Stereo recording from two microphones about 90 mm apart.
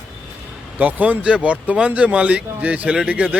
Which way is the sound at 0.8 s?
20° right (ahead or behind).